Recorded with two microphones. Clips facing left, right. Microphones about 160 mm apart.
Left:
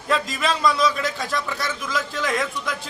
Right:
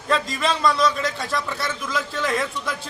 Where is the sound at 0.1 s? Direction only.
Centre (ahead or behind).